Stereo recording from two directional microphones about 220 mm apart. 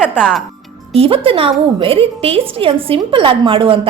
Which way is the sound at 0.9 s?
25° right (ahead or behind).